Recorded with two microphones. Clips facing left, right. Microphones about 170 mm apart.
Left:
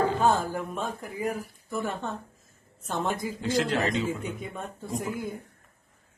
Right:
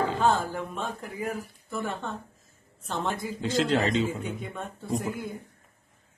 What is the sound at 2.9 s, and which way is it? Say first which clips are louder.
Speech: left 1 dB; 10° left (ahead or behind).